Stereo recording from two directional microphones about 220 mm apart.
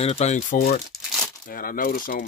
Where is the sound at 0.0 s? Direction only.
30° left (ahead or behind).